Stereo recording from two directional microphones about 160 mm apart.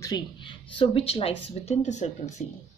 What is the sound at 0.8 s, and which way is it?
A woman's voice, 35° left (ahead or behind).